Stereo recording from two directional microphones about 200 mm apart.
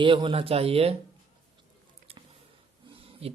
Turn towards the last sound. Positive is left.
turn(degrees=-30)  # may be behind; listen again after turning